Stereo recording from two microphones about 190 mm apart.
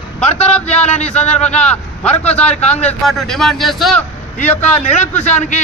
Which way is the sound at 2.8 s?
5° left (ahead or behind).